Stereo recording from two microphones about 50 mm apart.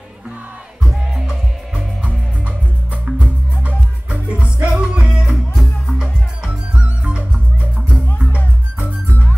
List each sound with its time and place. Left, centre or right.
0.8 s music: centre
2.0 s music: right
5.5 s music: centre
6.4 s music: right